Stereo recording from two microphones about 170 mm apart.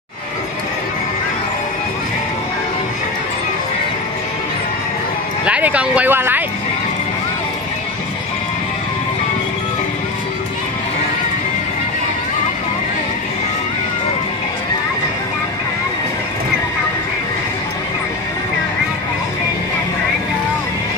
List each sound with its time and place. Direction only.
5.4 s speech: 5° right (ahead or behind)